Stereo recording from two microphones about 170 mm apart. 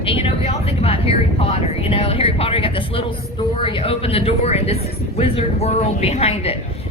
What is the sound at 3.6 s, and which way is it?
Speech, 30° left (ahead or behind).